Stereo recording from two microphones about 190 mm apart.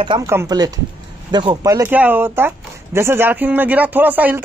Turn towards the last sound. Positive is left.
turn(degrees=-10)  # may be behind; listen again after turning